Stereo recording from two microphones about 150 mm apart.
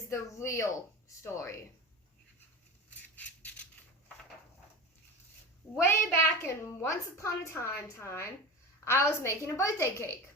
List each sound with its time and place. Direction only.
0.1 s speech: 20° left (ahead or behind)
3.2 s a sound: 10° left (ahead or behind)
5.8 s a woman's voice: 15° left (ahead or behind)